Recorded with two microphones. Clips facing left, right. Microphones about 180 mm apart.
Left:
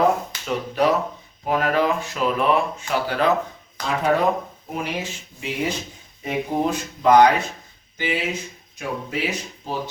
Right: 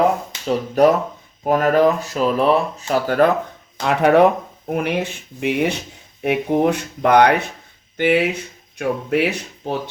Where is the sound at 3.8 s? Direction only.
65° right (ahead or behind).